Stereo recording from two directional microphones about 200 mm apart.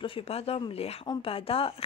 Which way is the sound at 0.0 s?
30° left (ahead or behind).